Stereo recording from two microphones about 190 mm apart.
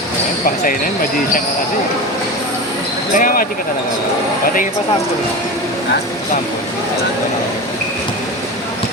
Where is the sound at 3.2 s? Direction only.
45° left (ahead or behind).